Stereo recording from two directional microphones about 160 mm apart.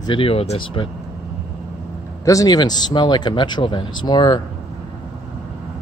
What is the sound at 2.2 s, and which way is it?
Speech, 20° left (ahead or behind).